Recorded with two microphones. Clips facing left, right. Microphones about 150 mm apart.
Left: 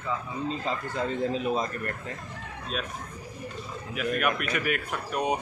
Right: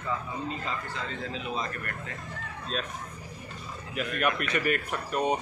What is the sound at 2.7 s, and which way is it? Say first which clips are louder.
Speech: even; 5° left (ahead or behind).